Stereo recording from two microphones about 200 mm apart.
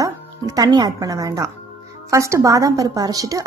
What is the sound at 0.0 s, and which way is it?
A woman's voice, 20° right (ahead or behind).